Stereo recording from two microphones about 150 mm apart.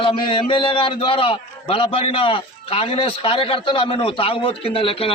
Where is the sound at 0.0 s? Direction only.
35° left (ahead or behind).